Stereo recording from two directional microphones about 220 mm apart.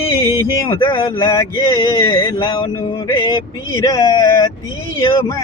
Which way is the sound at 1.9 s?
20° left (ahead or behind).